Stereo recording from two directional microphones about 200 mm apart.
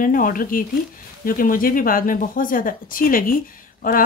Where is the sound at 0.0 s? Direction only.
45° left (ahead or behind).